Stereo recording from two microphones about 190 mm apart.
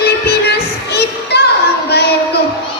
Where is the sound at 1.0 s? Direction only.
60° left (ahead or behind).